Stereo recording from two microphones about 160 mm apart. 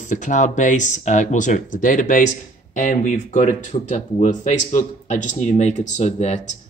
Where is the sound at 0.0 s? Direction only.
50° left (ahead or behind).